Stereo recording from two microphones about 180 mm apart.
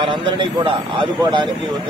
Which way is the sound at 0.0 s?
25° right (ahead or behind).